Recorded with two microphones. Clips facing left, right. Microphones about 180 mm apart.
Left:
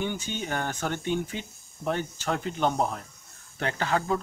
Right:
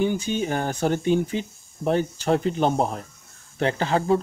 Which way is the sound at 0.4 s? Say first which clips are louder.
Right 6 dB; 30° right (ahead or behind).